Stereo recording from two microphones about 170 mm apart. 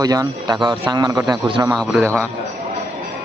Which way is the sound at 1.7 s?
Centre (ahead or behind).